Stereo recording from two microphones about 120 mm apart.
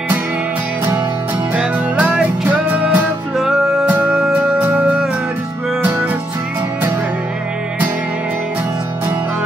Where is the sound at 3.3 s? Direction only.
Centre (ahead or behind).